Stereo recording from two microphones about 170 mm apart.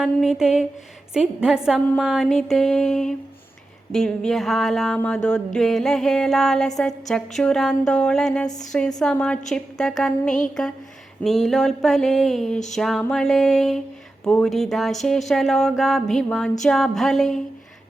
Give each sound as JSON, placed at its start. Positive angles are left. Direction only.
{"t": 0.0, "sound": "music", "side_deg": 0}